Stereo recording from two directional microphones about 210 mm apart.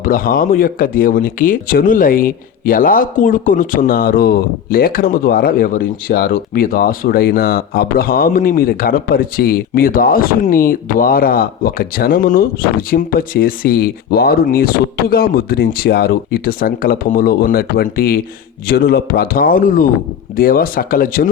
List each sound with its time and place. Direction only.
0.0 s speech: 45° left (ahead or behind)